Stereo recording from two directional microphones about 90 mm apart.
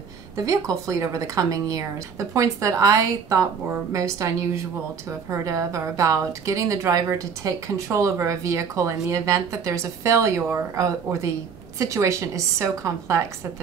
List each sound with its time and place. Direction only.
0.7 s a woman's voice: 40° right (ahead or behind)